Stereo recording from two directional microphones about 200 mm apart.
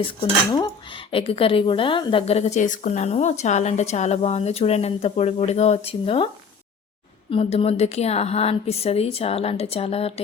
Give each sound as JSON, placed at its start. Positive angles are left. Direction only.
{"t": 0.2, "sound": "speech", "side_deg": 20}
{"t": 7.3, "sound": "speech", "side_deg": 30}